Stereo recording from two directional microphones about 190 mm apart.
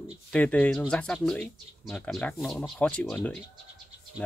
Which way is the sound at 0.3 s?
5° left (ahead or behind).